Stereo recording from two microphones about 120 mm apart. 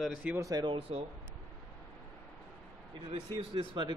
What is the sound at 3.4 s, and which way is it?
Speech, 45° right (ahead or behind).